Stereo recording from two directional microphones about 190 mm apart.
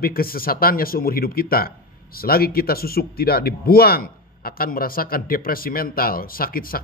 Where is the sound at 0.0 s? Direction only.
50° left (ahead or behind).